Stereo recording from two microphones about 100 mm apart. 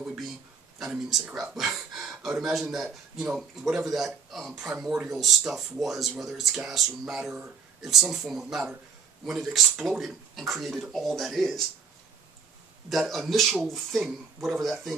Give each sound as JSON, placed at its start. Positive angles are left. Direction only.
{"t": 0.0, "sound": "a sound", "side_deg": -5}
{"t": 0.7, "sound": "a man's voice", "side_deg": 0}
{"t": 12.9, "sound": "a man's voice", "side_deg": -5}